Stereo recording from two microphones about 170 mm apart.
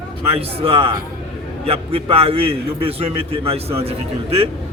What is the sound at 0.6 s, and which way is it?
A man's voice, 35° right (ahead or behind).